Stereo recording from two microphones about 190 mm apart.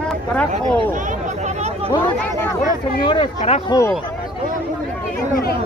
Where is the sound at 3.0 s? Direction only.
25° left (ahead or behind).